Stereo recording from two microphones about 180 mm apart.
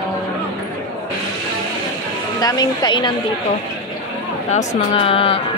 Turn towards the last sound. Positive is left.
turn(degrees=30)  # may be behind; listen again after turning